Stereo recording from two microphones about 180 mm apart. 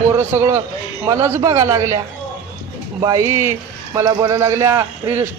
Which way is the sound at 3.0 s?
15° right (ahead or behind).